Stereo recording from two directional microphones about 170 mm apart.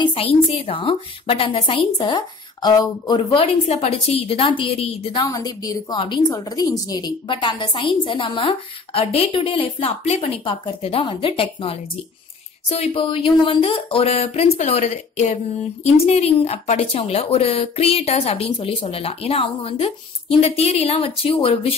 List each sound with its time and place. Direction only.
0.0 s speech: 35° left (ahead or behind)
5.2 s a woman's voice: 20° left (ahead or behind)